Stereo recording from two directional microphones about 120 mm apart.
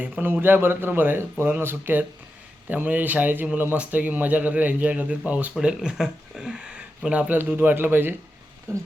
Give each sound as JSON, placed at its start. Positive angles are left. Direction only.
{"t": 0.0, "sound": "speech", "side_deg": -15}